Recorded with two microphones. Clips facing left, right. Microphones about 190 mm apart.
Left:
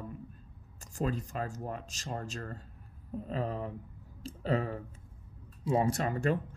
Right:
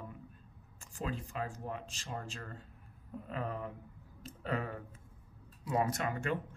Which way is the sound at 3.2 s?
30° left (ahead or behind).